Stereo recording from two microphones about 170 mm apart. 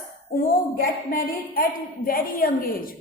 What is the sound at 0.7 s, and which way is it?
A woman's voice, 60° left (ahead or behind).